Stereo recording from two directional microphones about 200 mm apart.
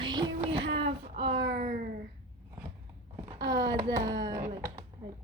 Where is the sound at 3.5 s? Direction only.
20° right (ahead or behind).